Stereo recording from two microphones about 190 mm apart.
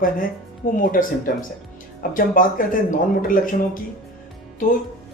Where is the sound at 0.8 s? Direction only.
45° left (ahead or behind).